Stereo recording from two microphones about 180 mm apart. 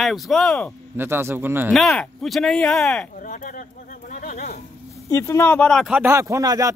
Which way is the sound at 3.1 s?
45° left (ahead or behind).